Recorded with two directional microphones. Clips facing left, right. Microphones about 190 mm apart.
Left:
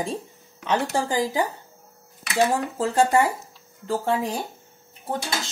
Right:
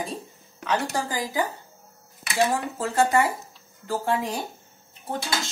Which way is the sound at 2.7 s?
25° left (ahead or behind).